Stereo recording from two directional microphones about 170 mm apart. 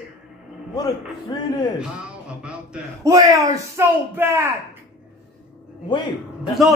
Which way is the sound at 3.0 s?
20° right (ahead or behind).